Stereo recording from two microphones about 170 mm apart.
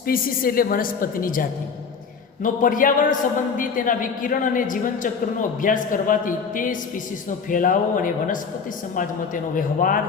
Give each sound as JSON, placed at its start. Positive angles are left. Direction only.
{"t": 0.0, "sound": "a woman's voice", "side_deg": 60}